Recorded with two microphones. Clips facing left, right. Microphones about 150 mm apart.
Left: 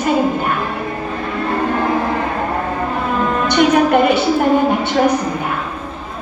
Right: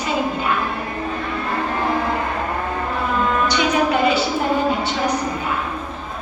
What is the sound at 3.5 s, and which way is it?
A woman's voice, 55° left (ahead or behind).